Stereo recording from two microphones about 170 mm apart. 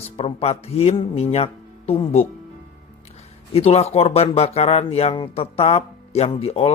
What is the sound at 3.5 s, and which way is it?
Speech, 40° left (ahead or behind).